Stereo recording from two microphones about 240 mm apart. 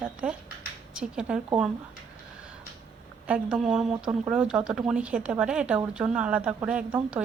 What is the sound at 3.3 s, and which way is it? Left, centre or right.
Speech, centre.